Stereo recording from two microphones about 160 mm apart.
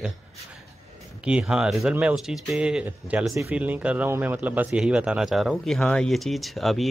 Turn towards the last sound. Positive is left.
turn(degrees=0)  # may be behind; listen again after turning